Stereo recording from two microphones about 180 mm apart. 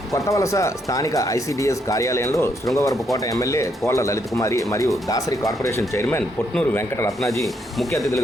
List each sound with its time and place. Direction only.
0.1 s speech: 15° left (ahead or behind)
7.4 s speech: centre (ahead or behind)